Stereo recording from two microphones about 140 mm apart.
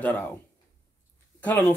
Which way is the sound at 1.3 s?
15° left (ahead or behind).